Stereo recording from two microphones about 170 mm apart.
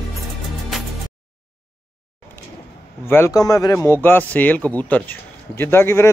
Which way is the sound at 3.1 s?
15° left (ahead or behind).